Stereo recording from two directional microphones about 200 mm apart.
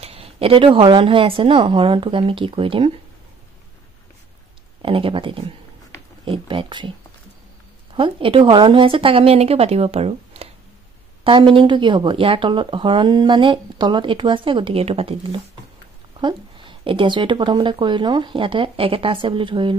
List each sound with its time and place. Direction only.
0.0 s speech: 30° right (ahead or behind)
4.8 s speech: 25° right (ahead or behind)
7.9 s speech: 25° right (ahead or behind)